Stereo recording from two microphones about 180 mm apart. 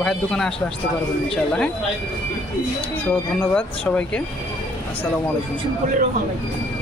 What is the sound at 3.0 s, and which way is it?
Speech, 5° left (ahead or behind).